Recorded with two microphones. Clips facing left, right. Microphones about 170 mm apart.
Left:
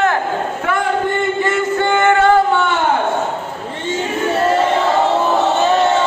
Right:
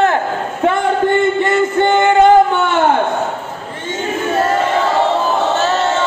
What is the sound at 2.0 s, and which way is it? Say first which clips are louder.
Music: right 3 dB; 20° right (ahead or behind).